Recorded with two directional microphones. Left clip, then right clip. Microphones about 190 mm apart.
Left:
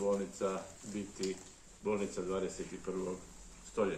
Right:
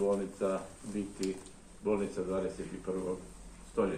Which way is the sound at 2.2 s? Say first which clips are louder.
Right 3 dB; 70° left (ahead or behind).